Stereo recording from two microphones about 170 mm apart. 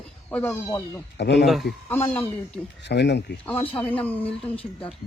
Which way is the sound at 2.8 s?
90° left.